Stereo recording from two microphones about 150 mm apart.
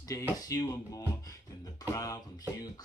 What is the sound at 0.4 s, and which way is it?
Music, 25° left (ahead or behind).